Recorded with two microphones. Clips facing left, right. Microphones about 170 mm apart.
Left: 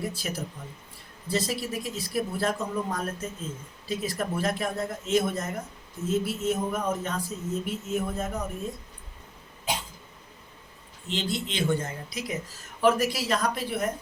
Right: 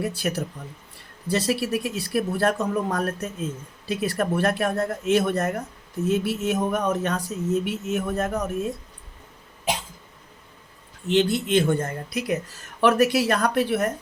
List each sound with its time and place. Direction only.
0.0 s speech: 70° right (ahead or behind)
11.1 s speech: 60° right (ahead or behind)